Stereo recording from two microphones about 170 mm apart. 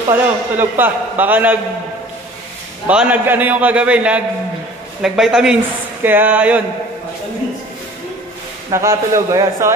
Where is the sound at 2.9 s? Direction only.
10° right (ahead or behind).